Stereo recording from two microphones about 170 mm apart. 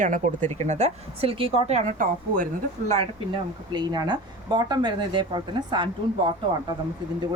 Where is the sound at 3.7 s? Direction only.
25° right (ahead or behind).